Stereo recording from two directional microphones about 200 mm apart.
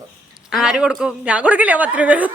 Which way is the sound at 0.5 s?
5° right (ahead or behind).